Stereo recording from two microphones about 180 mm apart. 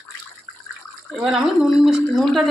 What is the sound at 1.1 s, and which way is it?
Speech, centre (ahead or behind).